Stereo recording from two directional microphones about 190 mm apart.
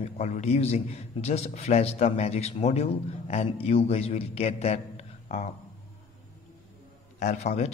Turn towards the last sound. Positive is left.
turn(degrees=35)  # may be behind; listen again after turning